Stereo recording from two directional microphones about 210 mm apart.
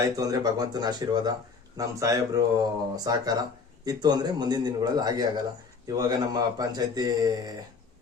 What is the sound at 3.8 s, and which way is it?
A man's voice, 20° right (ahead or behind).